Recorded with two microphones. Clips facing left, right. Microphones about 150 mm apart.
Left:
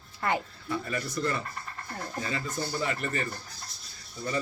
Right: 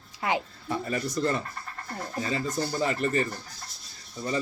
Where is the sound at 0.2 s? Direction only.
15° right (ahead or behind).